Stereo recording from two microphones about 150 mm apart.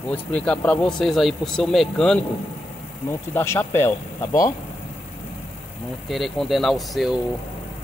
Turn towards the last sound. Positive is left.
turn(degrees=0)  # may be behind; listen again after turning